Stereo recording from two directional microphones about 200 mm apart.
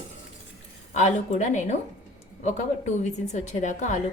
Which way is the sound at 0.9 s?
35° left (ahead or behind).